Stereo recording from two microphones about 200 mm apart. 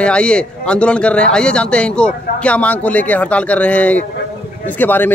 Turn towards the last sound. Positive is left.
turn(degrees=10)  # may be behind; listen again after turning